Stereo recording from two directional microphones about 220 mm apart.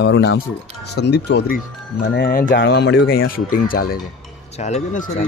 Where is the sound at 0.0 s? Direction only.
50° left (ahead or behind).